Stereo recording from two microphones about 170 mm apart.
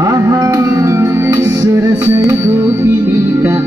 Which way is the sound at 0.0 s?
20° right (ahead or behind).